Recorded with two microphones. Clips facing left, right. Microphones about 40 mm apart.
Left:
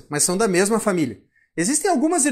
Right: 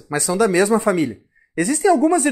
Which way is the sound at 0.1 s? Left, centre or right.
Centre.